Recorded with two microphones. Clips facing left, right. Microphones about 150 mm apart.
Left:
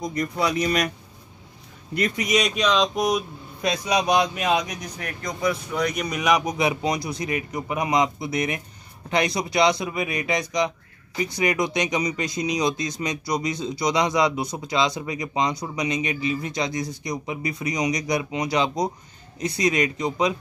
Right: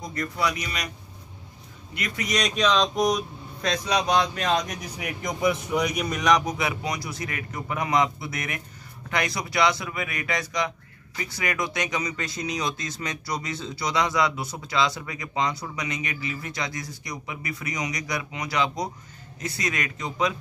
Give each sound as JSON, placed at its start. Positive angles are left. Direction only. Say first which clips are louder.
{"t": 0.0, "sound": "speech", "louder": "left 3 dB", "side_deg": 15}
{"t": 2.1, "sound": "speech", "louder": "even", "side_deg": 10}
{"t": 6.0, "sound": "speech", "louder": "left 1 dB", "side_deg": 5}